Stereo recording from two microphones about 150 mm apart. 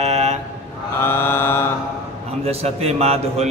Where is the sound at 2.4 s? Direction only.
45° right (ahead or behind).